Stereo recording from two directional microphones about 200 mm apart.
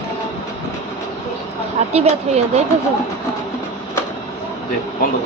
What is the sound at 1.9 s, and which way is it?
Speech, 35° right (ahead or behind).